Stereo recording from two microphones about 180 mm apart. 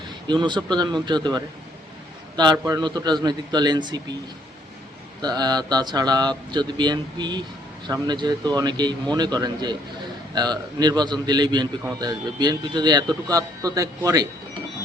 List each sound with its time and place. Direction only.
0.3 s a man's voice: 25° right (ahead or behind)
5.2 s a man's voice: 20° right (ahead or behind)